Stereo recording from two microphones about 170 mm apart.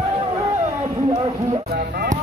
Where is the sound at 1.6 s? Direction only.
65° right (ahead or behind).